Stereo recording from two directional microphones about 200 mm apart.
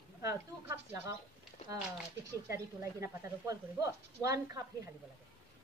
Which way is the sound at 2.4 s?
15° right (ahead or behind).